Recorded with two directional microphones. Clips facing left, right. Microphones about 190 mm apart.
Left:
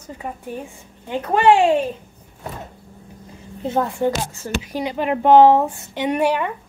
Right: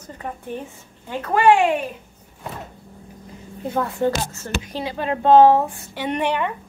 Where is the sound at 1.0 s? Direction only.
20° left (ahead or behind).